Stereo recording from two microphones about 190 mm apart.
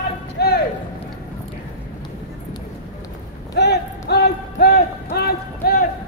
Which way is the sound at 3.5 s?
60° left (ahead or behind).